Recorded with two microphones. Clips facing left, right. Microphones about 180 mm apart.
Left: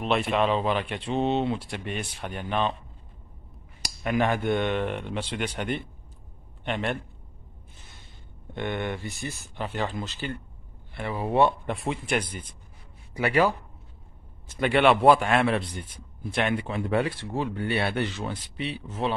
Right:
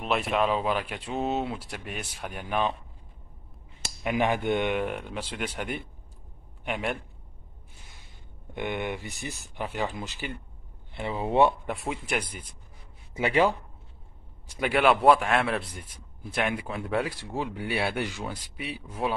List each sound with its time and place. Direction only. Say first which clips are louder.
0.0 s speech: left 2 dB; 5° right (ahead or behind)
3.8 s speech: left 1 dB; 15° right (ahead or behind)
8.5 s speech: left 1 dB; 15° right (ahead or behind)
11.6 s speech: left 2 dB; 5° right (ahead or behind)
13.1 s a man's voice: left 1 dB; 25° right (ahead or behind)
14.5 s speech: left 2 dB; 5° right (ahead or behind)